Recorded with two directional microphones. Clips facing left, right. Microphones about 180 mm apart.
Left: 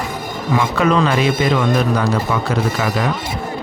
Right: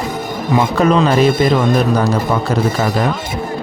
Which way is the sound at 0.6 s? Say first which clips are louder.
Right 3 dB; 40° right (ahead or behind).